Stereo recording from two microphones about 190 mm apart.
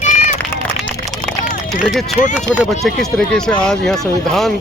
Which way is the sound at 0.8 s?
Centre (ahead or behind).